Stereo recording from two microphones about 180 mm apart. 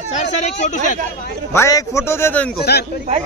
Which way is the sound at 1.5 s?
15° left (ahead or behind).